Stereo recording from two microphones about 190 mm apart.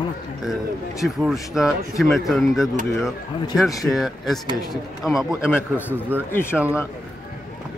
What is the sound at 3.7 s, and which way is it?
Speech, 20° left (ahead or behind).